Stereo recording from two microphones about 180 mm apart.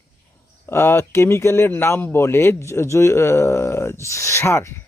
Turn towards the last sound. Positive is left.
turn(degrees=15)  # may be behind; listen again after turning